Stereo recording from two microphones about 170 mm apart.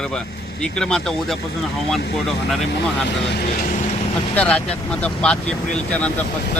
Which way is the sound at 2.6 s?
90° left.